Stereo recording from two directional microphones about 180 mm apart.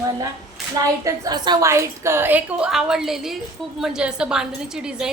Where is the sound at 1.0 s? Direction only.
20° right (ahead or behind).